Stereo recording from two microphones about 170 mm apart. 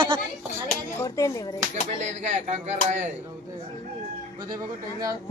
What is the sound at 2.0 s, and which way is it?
Speech, 40° right (ahead or behind).